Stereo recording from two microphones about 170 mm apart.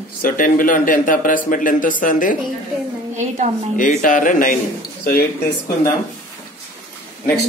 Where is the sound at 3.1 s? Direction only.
45° right (ahead or behind).